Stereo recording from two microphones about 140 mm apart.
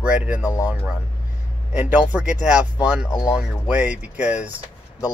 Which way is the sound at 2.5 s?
10° right (ahead or behind).